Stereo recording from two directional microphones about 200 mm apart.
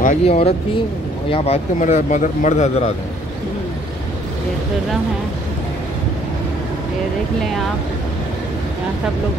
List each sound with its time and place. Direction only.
0.0 s a man's voice: 35° left (ahead or behind)